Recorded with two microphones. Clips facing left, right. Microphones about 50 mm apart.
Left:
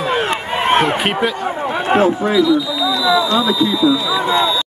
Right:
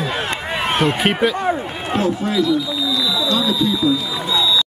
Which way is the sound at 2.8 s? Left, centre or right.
Left.